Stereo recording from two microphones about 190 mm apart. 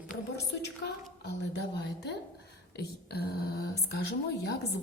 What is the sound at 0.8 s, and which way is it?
Speech, 60° left (ahead or behind).